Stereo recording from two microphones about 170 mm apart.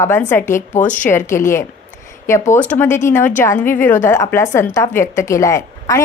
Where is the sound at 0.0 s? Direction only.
15° left (ahead or behind).